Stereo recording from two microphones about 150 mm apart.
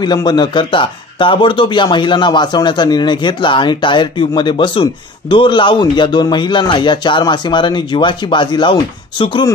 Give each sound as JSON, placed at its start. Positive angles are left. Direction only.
{"t": 0.0, "sound": "speech", "side_deg": 30}